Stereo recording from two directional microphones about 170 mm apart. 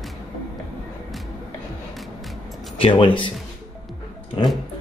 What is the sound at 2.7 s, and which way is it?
Speech, 30° left (ahead or behind).